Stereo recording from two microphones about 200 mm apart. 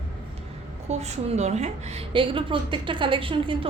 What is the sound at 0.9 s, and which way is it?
A woman's voice, 35° right (ahead or behind).